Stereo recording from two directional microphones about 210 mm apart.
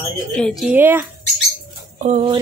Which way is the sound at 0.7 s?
10° right (ahead or behind).